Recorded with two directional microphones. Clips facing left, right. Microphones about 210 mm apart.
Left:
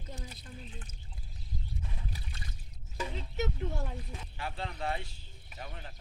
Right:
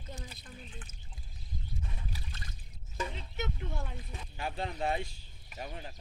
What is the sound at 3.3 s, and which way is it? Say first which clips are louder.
Speech: left 5 dB; 40° left (ahead or behind).